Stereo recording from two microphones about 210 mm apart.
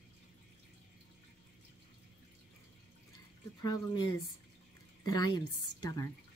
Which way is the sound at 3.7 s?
20° left (ahead or behind).